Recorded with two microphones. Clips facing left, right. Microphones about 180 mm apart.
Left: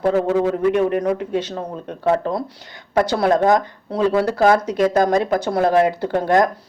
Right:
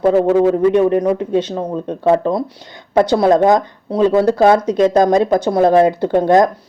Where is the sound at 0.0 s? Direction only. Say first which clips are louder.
Right 5 dB; 25° right (ahead or behind).